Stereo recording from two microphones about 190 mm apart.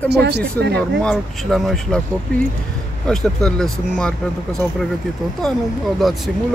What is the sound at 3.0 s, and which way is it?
Speech, 5° left (ahead or behind).